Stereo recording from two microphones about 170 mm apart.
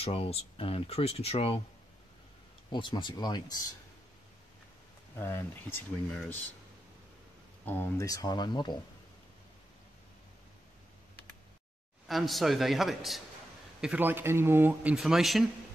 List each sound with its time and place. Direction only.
0.0 s speech: 35° left (ahead or behind)
2.7 s speech: 25° left (ahead or behind)
5.1 s speech: 15° left (ahead or behind)
7.6 s speech: 10° left (ahead or behind)
12.1 s a man's voice: centre (ahead or behind)